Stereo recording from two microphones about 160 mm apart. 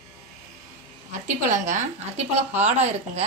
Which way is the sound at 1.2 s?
50° right (ahead or behind).